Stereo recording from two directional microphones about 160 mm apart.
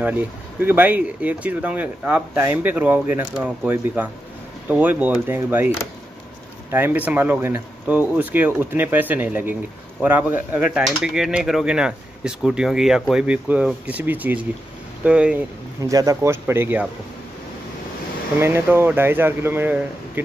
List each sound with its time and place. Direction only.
0.0 s speech: 10° right (ahead or behind)
6.7 s speech: 10° right (ahead or behind)
15.8 s speech: 20° right (ahead or behind)
18.4 s speech: 15° right (ahead or behind)